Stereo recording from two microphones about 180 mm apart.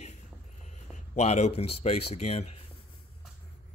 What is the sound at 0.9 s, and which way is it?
Speech, 40° left (ahead or behind).